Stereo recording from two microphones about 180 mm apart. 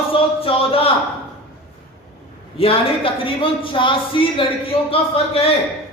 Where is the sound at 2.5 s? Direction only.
30° left (ahead or behind).